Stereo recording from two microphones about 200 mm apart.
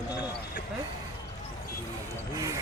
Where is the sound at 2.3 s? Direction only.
15° right (ahead or behind).